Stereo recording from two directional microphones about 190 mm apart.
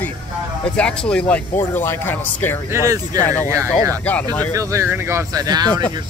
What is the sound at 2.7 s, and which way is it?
Speech, 15° right (ahead or behind).